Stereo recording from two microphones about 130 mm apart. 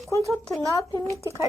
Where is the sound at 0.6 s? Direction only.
30° left (ahead or behind).